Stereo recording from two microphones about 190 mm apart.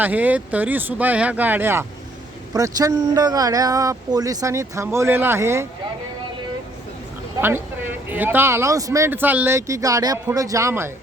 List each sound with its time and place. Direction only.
0.0 s speech: 10° right (ahead or behind)
7.4 s speech: 10° right (ahead or behind)